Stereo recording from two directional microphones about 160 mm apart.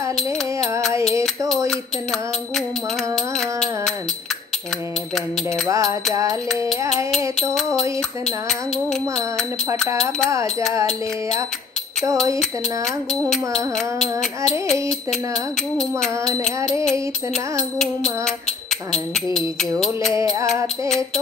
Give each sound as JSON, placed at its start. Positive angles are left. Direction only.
{"t": 3.3, "sound": "music", "side_deg": 5}
{"t": 5.5, "sound": "music", "side_deg": -20}
{"t": 7.3, "sound": "speech", "side_deg": 0}
{"t": 12.4, "sound": "speech", "side_deg": 5}
{"t": 14.7, "sound": "speech", "side_deg": 0}
{"t": 17.7, "sound": "speech", "side_deg": 5}
{"t": 19.8, "sound": "speech", "side_deg": 0}
{"t": 20.2, "sound": "music", "side_deg": -20}